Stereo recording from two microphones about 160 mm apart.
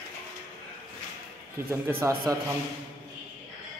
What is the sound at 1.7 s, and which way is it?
Speech, 15° right (ahead or behind).